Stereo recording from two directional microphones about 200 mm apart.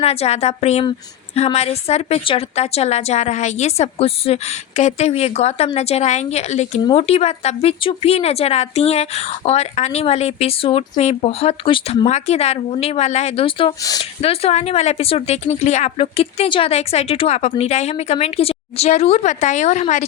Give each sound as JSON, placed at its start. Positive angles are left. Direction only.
{"t": 0.0, "sound": "speech", "side_deg": 30}